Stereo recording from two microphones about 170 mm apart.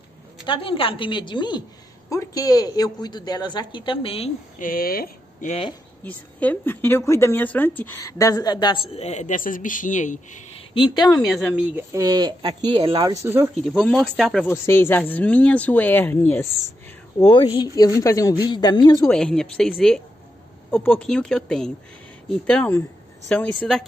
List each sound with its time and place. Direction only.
0.5 s a woman's voice: 30° left (ahead or behind)
4.6 s speech: 55° left (ahead or behind)
5.5 s speech: 30° left (ahead or behind)
6.0 s a woman's voice: 10° left (ahead or behind); by 10.4 s 45° left (ahead or behind)
10.7 s a woman's voice: 25° left (ahead or behind)
11.2 s speech: 5° right (ahead or behind)
13.8 s speech: 5° left (ahead or behind)
14.5 s speech: 15° left (ahead or behind)
17.3 s a woman's voice: 25° left (ahead or behind)
19.0 s speech: 5° left (ahead or behind)
20.7 s speech: 5° left (ahead or behind)